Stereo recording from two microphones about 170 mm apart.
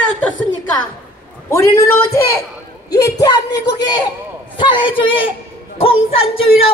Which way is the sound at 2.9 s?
20° left (ahead or behind).